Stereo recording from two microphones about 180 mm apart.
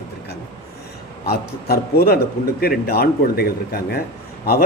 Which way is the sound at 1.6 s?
60° left (ahead or behind).